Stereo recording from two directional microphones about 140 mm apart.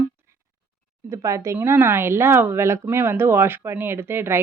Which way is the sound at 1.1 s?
20° right (ahead or behind).